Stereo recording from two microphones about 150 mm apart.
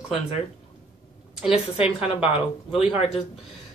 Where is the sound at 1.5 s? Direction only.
40° left (ahead or behind).